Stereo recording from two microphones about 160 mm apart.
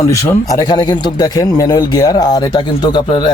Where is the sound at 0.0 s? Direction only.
20° left (ahead or behind).